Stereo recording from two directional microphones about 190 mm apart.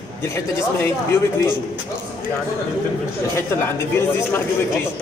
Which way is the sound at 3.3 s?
15° left (ahead or behind).